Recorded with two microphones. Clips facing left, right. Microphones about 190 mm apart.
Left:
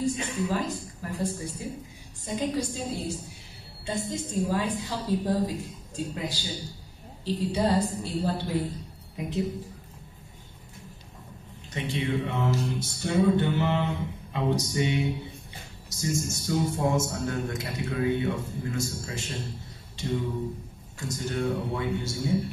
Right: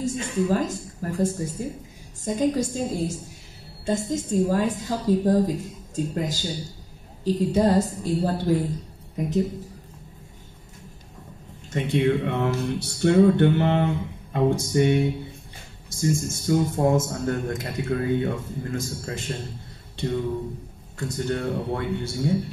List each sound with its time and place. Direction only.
0.0 s a woman's voice: 45° right (ahead or behind)
11.7 s a man's voice: 55° right (ahead or behind)
21.1 s speech: 60° right (ahead or behind)